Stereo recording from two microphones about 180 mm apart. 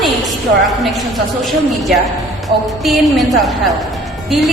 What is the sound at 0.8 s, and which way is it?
A woman's voice, centre (ahead or behind).